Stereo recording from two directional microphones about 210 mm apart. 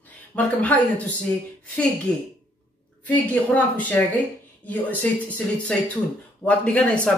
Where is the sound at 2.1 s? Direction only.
5° left (ahead or behind).